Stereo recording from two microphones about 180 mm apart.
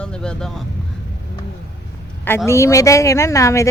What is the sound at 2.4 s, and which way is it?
Speech, 15° left (ahead or behind).